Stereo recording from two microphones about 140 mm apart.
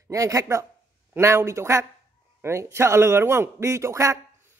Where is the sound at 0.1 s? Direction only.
25° right (ahead or behind).